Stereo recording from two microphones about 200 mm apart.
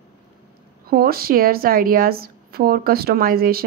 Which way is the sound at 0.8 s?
50° right (ahead or behind).